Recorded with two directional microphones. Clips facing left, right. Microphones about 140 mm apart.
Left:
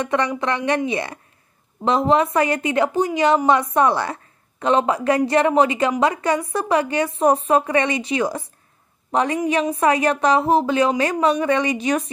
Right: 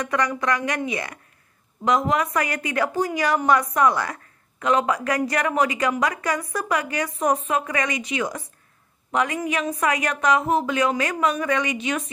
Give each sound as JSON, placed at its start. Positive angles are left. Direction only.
{"t": 0.0, "sound": "a woman's voice", "side_deg": 25}